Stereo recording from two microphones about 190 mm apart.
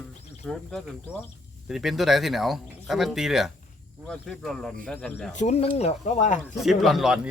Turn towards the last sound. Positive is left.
turn(degrees=-5)  # may be behind; listen again after turning